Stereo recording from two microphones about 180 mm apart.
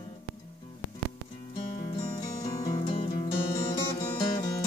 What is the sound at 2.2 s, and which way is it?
Music, 20° left (ahead or behind).